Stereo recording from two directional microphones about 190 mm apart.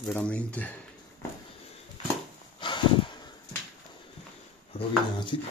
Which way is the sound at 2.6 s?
25° left (ahead or behind).